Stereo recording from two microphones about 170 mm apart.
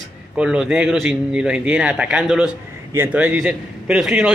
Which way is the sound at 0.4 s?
5° right (ahead or behind).